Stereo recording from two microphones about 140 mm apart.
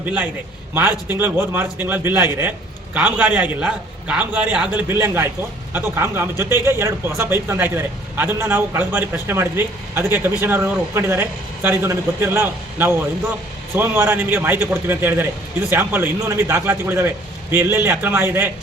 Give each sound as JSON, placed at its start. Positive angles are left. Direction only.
{"t": 0.0, "sound": "a man's voice", "side_deg": -10}